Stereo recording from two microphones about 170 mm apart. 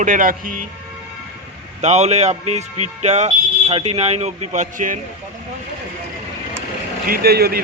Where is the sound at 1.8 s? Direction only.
40° right (ahead or behind).